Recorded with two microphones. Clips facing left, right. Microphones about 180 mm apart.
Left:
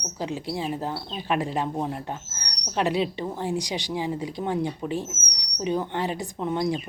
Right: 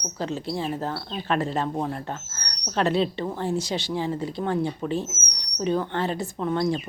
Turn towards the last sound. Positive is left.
turn(degrees=15)  # may be behind; listen again after turning